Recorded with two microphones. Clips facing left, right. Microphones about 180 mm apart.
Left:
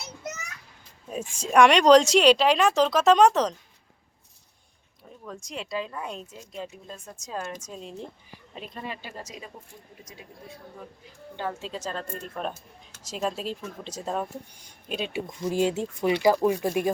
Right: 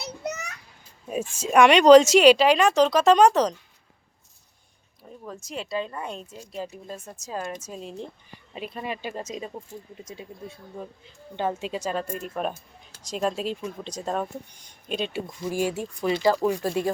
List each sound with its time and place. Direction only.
0.0 s children playing: 65° right (ahead or behind)
1.4 s speech: 5° right (ahead or behind)
5.3 s speech: 5° right (ahead or behind)
8.8 s speech: 15° right (ahead or behind)
13.0 s speech: 5° left (ahead or behind)
15.4 s speech: 20° left (ahead or behind)